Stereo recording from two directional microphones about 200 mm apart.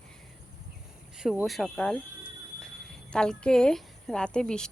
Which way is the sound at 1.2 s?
Centre (ahead or behind).